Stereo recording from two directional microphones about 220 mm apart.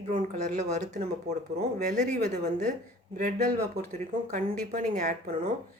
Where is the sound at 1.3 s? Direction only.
50° right (ahead or behind).